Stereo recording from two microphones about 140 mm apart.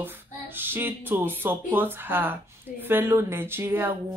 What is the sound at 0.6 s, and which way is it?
Speech, 15° right (ahead or behind).